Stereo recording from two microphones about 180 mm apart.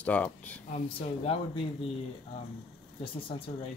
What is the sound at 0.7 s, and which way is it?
Speech, 35° left (ahead or behind).